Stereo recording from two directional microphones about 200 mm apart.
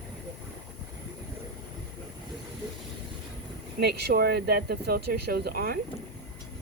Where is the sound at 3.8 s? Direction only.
55° right (ahead or behind).